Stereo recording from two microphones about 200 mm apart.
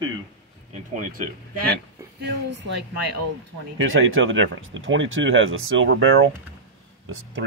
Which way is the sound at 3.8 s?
85° right.